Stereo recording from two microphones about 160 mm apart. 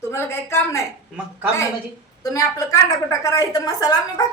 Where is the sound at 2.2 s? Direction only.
20° left (ahead or behind).